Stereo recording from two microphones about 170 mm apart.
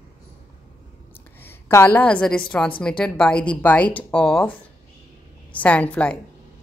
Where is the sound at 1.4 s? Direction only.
15° left (ahead or behind).